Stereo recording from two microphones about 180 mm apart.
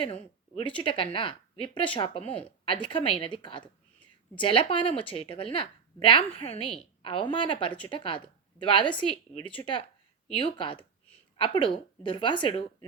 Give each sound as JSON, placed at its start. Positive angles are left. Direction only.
{"t": 0.0, "sound": "a woman's voice", "side_deg": 30}